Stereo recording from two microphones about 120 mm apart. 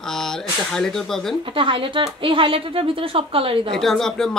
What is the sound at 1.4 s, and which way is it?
Speech, 45° right (ahead or behind).